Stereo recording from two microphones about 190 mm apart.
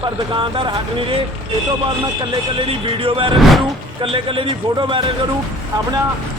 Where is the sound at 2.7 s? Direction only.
25° right (ahead or behind).